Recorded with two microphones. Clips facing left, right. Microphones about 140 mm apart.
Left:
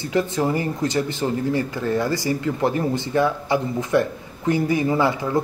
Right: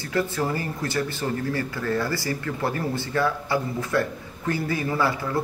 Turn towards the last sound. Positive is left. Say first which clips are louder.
# left 4 dB
turn(degrees=20)  # may be behind; listen again after turning